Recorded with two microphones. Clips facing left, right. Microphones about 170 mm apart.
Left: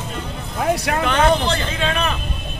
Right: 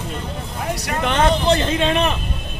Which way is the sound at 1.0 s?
20° right (ahead or behind).